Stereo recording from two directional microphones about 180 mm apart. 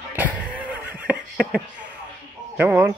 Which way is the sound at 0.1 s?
10° right (ahead or behind).